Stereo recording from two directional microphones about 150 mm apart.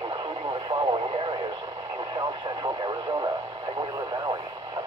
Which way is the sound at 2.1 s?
25° right (ahead or behind).